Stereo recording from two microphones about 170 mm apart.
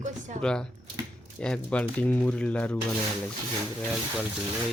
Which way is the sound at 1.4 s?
5° left (ahead or behind).